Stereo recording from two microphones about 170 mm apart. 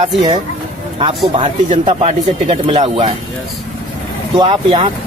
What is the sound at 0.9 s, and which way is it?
Speech, 35° right (ahead or behind).